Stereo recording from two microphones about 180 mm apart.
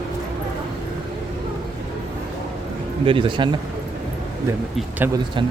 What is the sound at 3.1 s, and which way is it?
Speech, 30° right (ahead or behind).